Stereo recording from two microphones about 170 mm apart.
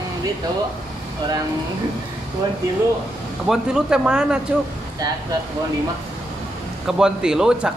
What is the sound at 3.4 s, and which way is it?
Speech, 5° right (ahead or behind).